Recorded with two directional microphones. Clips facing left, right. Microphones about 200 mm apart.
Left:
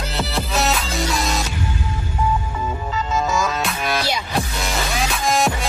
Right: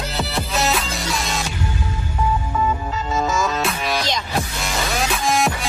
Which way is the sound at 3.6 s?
Centre (ahead or behind).